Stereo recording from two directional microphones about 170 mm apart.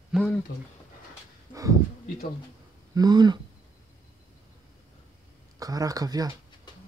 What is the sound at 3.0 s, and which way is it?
Speech, 25° right (ahead or behind).